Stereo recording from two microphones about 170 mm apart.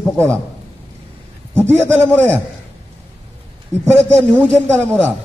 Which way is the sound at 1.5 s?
15° right (ahead or behind).